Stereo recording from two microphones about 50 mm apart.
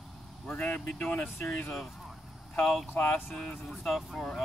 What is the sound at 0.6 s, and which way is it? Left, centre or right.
Speech, left.